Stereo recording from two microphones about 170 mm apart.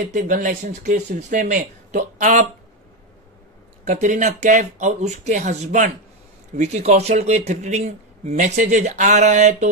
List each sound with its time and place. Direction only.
0.0 s speech: 55° right (ahead or behind)
3.8 s speech: 45° right (ahead or behind)